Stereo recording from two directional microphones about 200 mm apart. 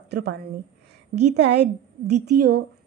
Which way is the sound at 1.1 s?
35° right (ahead or behind).